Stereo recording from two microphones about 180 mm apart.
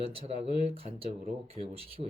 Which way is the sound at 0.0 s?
35° right (ahead or behind).